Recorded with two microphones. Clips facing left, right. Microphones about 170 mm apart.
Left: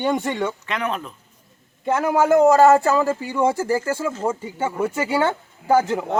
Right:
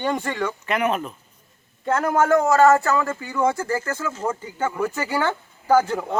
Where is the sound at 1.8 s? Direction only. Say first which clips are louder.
Left 1 dB; 10° left (ahead or behind).